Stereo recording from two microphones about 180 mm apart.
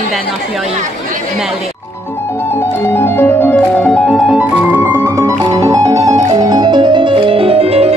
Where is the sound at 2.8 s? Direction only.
10° left (ahead or behind).